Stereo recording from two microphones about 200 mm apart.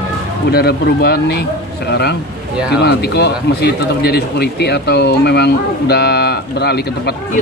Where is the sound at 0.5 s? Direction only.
50° left (ahead or behind).